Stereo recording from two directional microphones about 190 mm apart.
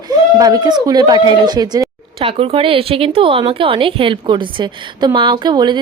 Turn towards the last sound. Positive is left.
turn(degrees=-25)  # may be behind; listen again after turning